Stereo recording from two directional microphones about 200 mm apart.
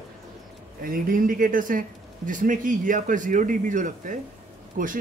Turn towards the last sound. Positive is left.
turn(degrees=-45)  # may be behind; listen again after turning